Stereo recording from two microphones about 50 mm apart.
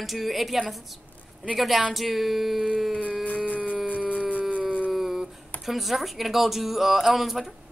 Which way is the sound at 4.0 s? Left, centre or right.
Right.